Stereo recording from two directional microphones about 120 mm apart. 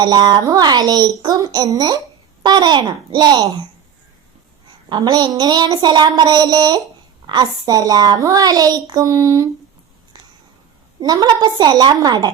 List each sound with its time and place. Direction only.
0.0 s a child's voice: 35° right (ahead or behind)
4.9 s a child's voice: 35° right (ahead or behind)
11.0 s a child's voice: 35° right (ahead or behind)